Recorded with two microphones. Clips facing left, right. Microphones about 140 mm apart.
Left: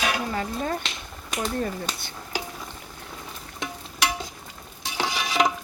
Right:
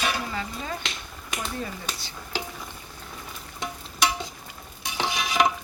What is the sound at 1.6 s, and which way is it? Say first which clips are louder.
Speech: left 5 dB; 55° left (ahead or behind).